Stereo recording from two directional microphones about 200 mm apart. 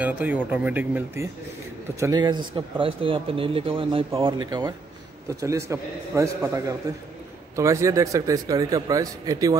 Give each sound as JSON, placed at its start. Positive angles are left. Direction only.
{"t": 0.0, "sound": "a man's voice", "side_deg": -10}